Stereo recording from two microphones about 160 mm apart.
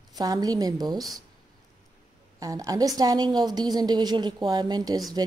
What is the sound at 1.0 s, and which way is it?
Speech, centre (ahead or behind).